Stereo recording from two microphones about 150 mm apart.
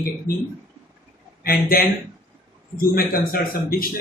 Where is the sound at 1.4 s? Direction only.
80° left.